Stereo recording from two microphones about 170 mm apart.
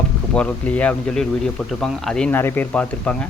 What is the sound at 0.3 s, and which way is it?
Speech, 10° left (ahead or behind).